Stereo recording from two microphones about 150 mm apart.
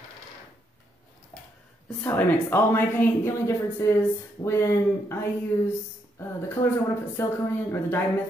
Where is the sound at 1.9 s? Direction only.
10° left (ahead or behind).